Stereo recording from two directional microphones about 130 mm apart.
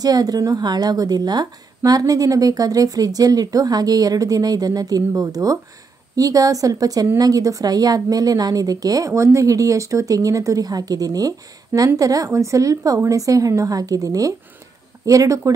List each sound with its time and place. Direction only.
0.0 s speech: 30° right (ahead or behind)